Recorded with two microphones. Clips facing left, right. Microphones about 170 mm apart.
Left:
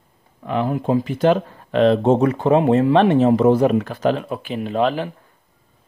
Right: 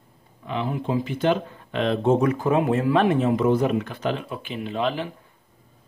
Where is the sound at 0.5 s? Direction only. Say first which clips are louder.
Left 6 dB; 50° left (ahead or behind).